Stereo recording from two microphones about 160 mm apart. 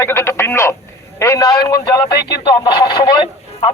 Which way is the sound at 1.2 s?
20° left (ahead or behind).